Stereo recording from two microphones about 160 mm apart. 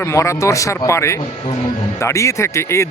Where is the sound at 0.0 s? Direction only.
20° left (ahead or behind).